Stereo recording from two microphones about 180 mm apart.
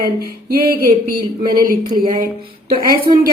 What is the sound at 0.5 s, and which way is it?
A woman's voice, 55° right (ahead or behind).